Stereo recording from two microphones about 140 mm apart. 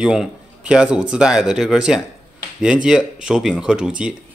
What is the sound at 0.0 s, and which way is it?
Speech, 5° right (ahead or behind).